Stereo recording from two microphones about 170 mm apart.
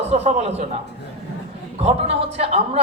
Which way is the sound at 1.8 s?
35° right (ahead or behind).